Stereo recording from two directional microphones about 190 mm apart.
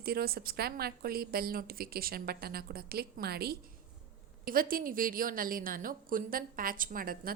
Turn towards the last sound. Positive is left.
turn(degrees=-50)  # may be behind; listen again after turning